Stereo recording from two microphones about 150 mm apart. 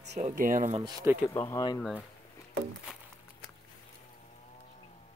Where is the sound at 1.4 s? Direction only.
30° left (ahead or behind).